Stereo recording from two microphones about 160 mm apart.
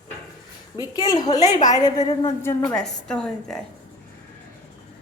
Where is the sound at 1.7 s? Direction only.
25° left (ahead or behind); by 3.6 s 5° left (ahead or behind).